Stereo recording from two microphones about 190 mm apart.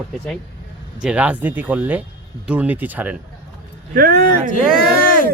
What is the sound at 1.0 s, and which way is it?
Speech, 5° right (ahead or behind).